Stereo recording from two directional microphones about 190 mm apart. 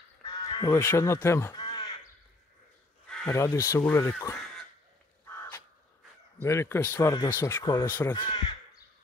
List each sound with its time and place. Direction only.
0.2 s crow: 15° left (ahead or behind)
3.1 s crow: 5° left (ahead or behind)
3.3 s speech: 15° left (ahead or behind)
6.4 s speech: 15° left (ahead or behind)